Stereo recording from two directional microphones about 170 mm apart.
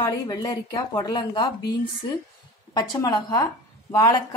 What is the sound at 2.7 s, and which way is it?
Speech, 25° left (ahead or behind).